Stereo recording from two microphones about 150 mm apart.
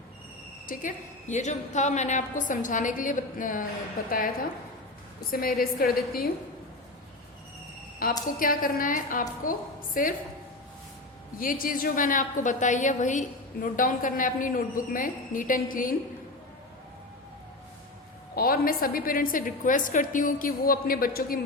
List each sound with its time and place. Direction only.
0.7 s a woman's voice: 60° left (ahead or behind)
8.0 s a woman's voice: 75° left (ahead or behind)
8.4 s a woman's voice: 65° left (ahead or behind)
11.3 s a woman's voice: 70° left (ahead or behind)
18.3 s a woman's voice: 75° left (ahead or behind)